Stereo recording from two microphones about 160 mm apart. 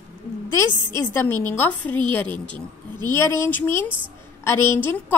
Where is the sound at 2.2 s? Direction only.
30° right (ahead or behind).